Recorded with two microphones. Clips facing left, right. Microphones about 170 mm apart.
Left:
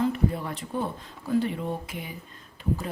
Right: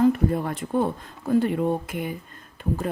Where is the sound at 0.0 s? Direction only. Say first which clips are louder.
Right 6 dB; 50° right (ahead or behind).